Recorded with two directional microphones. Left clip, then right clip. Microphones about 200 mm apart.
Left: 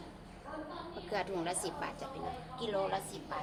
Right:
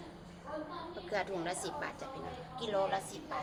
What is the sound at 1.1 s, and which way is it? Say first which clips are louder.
A woman's voice: even; 15° left (ahead or behind).